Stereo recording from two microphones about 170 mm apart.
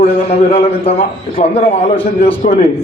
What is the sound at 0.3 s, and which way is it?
A man's voice, 40° left (ahead or behind).